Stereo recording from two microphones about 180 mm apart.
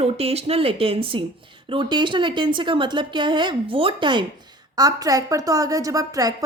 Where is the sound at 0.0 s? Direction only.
35° right (ahead or behind).